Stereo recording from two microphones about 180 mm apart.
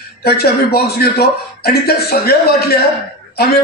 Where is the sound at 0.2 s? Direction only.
60° left (ahead or behind).